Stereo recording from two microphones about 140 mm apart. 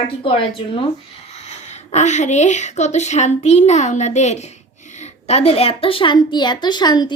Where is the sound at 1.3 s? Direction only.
50° left (ahead or behind).